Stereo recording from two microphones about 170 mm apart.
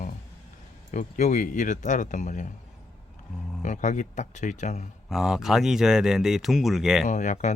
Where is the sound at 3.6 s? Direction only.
45° left (ahead or behind).